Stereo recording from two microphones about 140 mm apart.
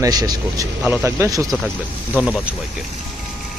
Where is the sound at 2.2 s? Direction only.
10° right (ahead or behind).